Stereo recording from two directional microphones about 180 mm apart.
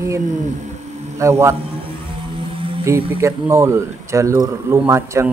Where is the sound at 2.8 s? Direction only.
15° right (ahead or behind).